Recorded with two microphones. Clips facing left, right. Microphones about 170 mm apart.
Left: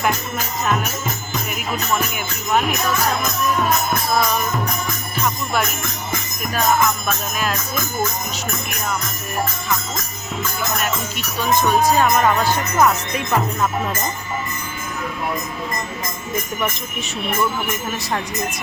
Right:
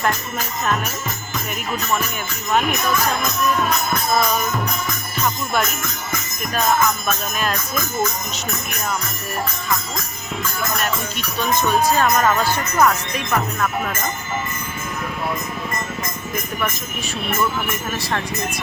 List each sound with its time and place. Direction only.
7.1 s music: 5° left (ahead or behind)
11.3 s music: 15° left (ahead or behind)
13.3 s speech: 20° left (ahead or behind)